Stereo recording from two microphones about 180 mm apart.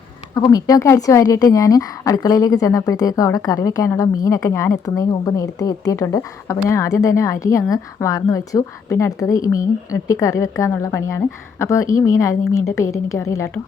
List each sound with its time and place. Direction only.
0.3 s a woman's voice: 20° left (ahead or behind)